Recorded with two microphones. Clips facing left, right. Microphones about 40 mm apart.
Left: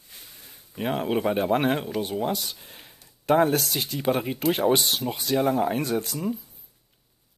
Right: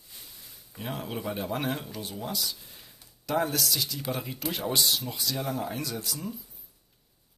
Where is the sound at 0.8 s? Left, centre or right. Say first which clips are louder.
Left 10 dB; left.